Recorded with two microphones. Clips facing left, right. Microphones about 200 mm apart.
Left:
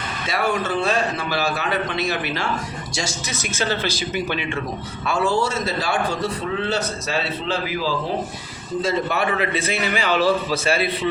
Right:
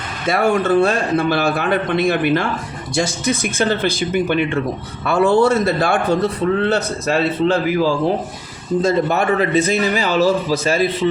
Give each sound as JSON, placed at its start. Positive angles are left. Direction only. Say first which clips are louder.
{"t": 0.3, "sound": "a man's voice", "louder": "right 7 dB", "side_deg": -50}